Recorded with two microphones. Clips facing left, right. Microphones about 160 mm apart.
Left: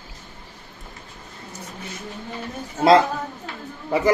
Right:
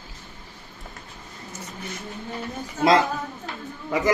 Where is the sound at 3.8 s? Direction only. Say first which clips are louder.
Left 3 dB; 30° left (ahead or behind).